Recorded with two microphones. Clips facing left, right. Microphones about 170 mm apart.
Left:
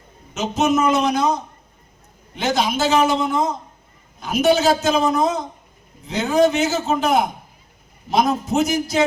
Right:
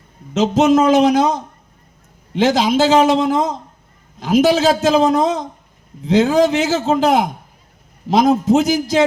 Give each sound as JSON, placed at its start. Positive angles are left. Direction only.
{"t": 0.3, "sound": "a man's voice", "side_deg": -90}
{"t": 8.4, "sound": "a man's voice", "side_deg": -90}